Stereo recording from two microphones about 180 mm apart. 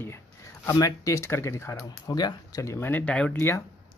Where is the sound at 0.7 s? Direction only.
20° left (ahead or behind).